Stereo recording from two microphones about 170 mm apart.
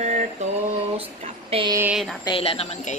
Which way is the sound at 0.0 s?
45° right (ahead or behind).